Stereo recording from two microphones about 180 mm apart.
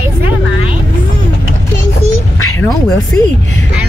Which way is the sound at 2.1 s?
15° left (ahead or behind).